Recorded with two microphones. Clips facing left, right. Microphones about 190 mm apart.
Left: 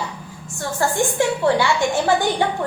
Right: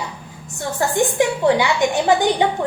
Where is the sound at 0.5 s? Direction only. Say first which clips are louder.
Right 1 dB; 20° right (ahead or behind).